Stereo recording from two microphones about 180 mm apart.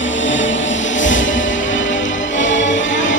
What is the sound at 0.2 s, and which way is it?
Music, 90° left.